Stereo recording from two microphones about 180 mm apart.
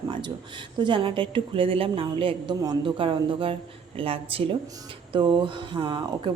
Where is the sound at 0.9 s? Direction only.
30° right (ahead or behind).